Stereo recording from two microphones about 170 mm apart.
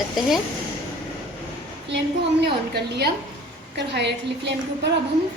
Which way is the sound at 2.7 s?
75° right (ahead or behind).